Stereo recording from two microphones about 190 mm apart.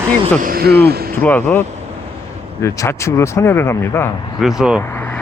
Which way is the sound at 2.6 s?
15° left (ahead or behind).